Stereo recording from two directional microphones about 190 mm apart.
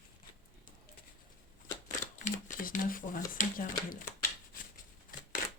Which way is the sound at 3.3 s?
45° left (ahead or behind).